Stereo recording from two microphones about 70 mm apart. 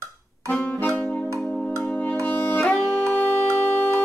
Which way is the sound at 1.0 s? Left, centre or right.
Centre.